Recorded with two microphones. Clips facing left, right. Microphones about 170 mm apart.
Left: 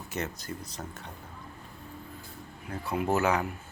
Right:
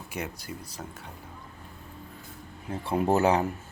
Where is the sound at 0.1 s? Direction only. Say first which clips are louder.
Left 1 dB; 10° right (ahead or behind).